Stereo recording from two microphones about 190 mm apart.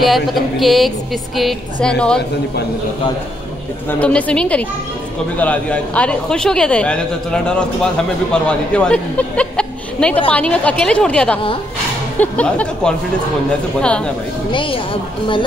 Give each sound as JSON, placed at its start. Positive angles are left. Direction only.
{"t": 0.0, "sound": "a woman's voice", "side_deg": 0}
{"t": 4.0, "sound": "a sound", "side_deg": 5}
{"t": 5.4, "sound": "a woman's voice", "side_deg": 5}
{"t": 12.2, "sound": "a sound", "side_deg": 5}
{"t": 13.7, "sound": "a woman's voice", "side_deg": 5}
{"t": 14.5, "sound": "speech", "side_deg": 25}